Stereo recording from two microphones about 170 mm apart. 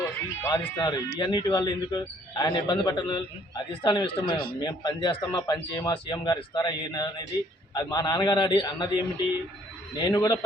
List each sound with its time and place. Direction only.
0.0 s speech: 15° left (ahead or behind)
10.1 s speech: 20° left (ahead or behind)